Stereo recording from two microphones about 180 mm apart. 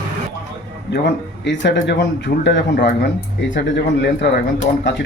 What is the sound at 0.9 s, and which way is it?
Speech, 75° left (ahead or behind).